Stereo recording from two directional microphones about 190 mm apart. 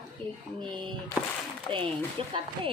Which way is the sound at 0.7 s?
25° right (ahead or behind).